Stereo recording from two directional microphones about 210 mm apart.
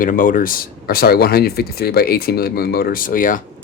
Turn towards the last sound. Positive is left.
turn(degrees=40)  # may be behind; listen again after turning